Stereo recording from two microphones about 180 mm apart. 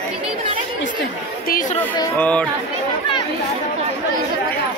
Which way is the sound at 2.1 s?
5° left (ahead or behind).